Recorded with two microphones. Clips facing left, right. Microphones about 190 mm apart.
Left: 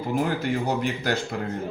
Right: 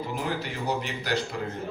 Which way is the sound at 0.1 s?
50° left (ahead or behind).